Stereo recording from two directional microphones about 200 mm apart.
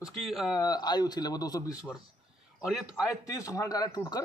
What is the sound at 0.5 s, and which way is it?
Speech, 20° left (ahead or behind).